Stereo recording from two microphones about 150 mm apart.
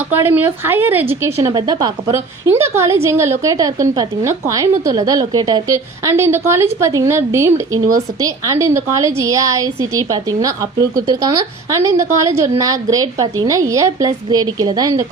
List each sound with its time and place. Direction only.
0.1 s a woman's voice: 15° right (ahead or behind)